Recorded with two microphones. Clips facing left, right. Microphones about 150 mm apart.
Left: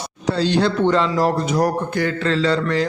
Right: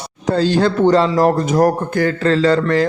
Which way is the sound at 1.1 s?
50° right (ahead or behind).